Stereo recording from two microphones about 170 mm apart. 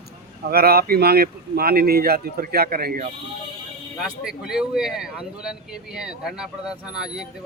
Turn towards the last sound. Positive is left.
turn(degrees=-5)  # may be behind; listen again after turning